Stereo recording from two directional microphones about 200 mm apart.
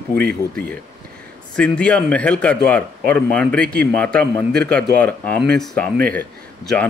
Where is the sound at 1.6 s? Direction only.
5° left (ahead or behind).